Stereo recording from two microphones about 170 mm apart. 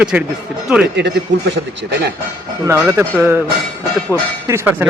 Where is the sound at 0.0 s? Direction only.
5° right (ahead or behind).